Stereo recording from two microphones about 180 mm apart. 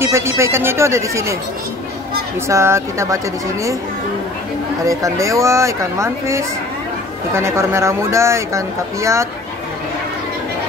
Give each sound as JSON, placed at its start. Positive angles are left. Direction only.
{"t": 0.0, "sound": "speech", "side_deg": -15}
{"t": 2.4, "sound": "speech", "side_deg": -15}
{"t": 4.8, "sound": "speech", "side_deg": -15}